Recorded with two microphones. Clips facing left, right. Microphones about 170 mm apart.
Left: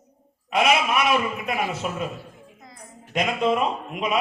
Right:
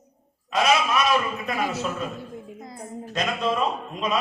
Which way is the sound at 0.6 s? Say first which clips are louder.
Left 1 dB; 20° left (ahead or behind).